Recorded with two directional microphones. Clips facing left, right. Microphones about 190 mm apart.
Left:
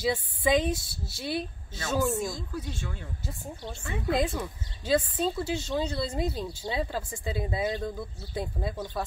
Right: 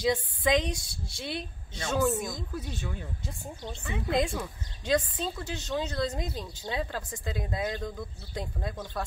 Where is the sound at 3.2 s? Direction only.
Centre (ahead or behind).